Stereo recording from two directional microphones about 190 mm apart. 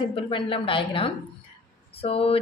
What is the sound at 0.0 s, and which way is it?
A woman's voice, 25° left (ahead or behind).